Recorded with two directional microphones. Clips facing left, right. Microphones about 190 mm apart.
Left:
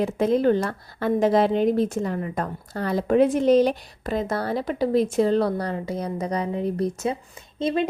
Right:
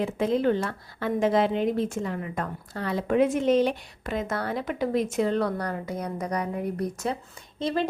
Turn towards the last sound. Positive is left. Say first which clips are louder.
# left 3 dB
turn(degrees=20)  # may be behind; listen again after turning